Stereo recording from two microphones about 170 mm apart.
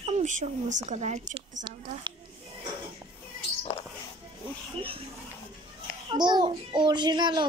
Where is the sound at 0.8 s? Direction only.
45° right (ahead or behind).